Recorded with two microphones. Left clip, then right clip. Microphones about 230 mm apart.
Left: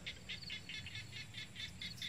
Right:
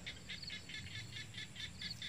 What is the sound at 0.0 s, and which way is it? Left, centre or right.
Bird, left.